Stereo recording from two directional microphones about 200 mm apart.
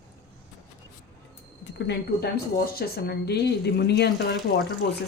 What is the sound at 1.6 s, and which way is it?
Speech, 60° left (ahead or behind).